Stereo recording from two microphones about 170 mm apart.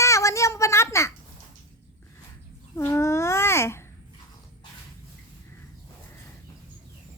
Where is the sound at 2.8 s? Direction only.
15° left (ahead or behind).